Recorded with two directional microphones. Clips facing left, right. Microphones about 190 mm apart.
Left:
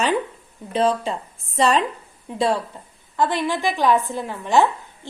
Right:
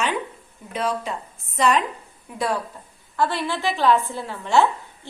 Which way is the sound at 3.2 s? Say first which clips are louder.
Left 2 dB; 15° left (ahead or behind).